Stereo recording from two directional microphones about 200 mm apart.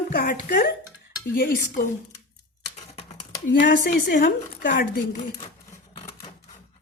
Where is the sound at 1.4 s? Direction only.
45° left (ahead or behind).